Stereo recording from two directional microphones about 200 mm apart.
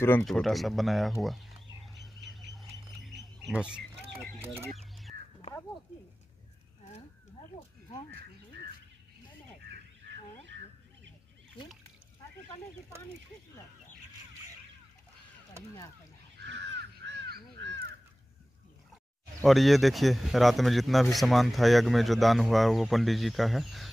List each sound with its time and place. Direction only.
0.2 s fowl: centre (ahead or behind)
3.4 s speech: 5° right (ahead or behind)
4.6 s chicken: centre (ahead or behind)
16.3 s crow: 60° right (ahead or behind)
19.4 s a man's voice: centre (ahead or behind)